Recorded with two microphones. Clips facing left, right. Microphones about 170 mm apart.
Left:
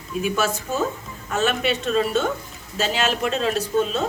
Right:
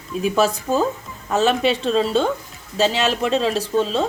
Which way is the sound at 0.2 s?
35° right (ahead or behind).